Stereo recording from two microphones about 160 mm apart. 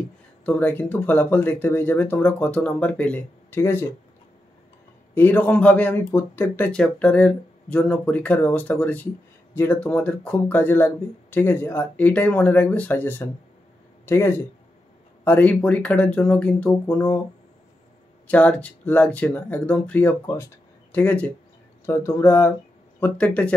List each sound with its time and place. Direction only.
0.5 s speech: 10° left (ahead or behind)
5.1 s speech: 10° left (ahead or behind)
18.3 s speech: 10° left (ahead or behind)